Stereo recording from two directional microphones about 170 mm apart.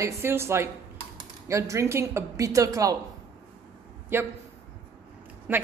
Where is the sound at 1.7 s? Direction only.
15° right (ahead or behind).